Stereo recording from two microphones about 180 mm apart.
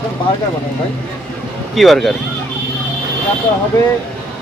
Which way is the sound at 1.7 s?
Centre (ahead or behind).